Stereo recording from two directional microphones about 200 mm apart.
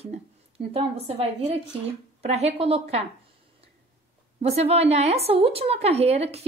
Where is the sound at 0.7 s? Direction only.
30° right (ahead or behind).